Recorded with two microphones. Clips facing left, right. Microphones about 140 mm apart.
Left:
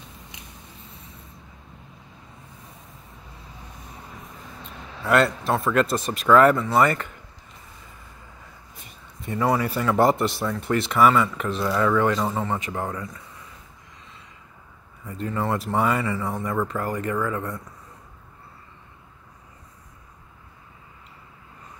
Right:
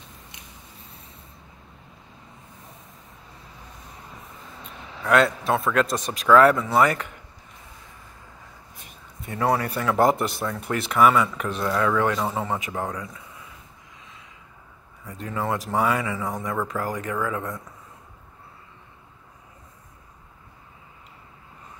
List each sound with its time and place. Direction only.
5.0 s speech: centre (ahead or behind)
9.2 s speech: centre (ahead or behind)
15.0 s speech: centre (ahead or behind)